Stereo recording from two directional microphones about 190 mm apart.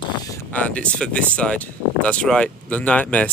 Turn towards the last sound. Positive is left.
turn(degrees=5)  # may be behind; listen again after turning